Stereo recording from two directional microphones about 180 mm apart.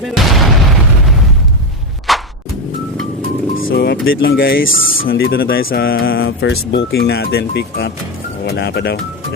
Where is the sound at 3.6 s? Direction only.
75° left (ahead or behind).